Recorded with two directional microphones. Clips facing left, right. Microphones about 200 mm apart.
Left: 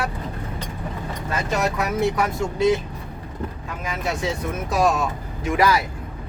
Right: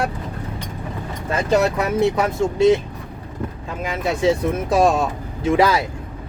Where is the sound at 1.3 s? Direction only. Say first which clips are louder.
Right 6 dB; 30° right (ahead or behind).